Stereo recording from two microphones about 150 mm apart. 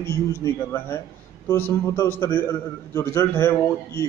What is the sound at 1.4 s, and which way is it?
A man's voice, 15° left (ahead or behind).